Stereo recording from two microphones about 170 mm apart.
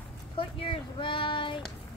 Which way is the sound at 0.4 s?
30° left (ahead or behind).